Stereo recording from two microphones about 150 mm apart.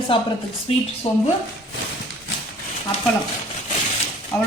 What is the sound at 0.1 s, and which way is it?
Speech, 35° left (ahead or behind).